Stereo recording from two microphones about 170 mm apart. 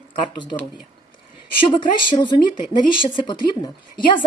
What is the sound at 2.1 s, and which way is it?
A woman's voice, 30° left (ahead or behind).